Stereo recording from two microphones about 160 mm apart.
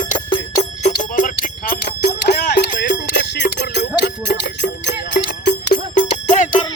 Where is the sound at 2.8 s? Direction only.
90° left.